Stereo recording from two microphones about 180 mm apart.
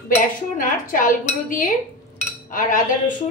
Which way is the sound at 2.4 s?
50° left (ahead or behind).